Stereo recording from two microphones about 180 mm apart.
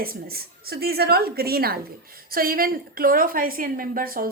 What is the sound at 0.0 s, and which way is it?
A woman's voice, 55° right (ahead or behind).